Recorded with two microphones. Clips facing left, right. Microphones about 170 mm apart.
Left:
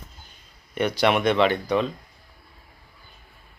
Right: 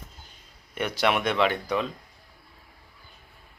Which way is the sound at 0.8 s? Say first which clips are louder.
Left 4 dB; 5° right (ahead or behind).